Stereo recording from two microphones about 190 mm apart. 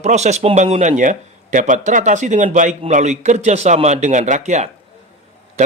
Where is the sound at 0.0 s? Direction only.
35° right (ahead or behind).